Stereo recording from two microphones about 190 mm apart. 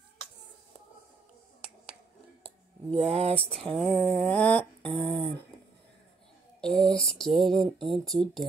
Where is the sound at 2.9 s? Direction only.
35° right (ahead or behind).